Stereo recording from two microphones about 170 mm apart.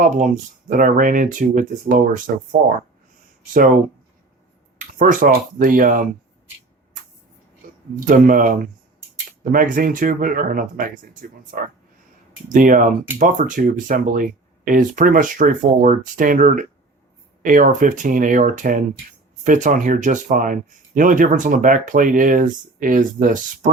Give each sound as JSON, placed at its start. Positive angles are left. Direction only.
{"t": 0.0, "sound": "speech", "side_deg": -50}
{"t": 4.9, "sound": "speech", "side_deg": -50}
{"t": 7.9, "sound": "speech", "side_deg": -55}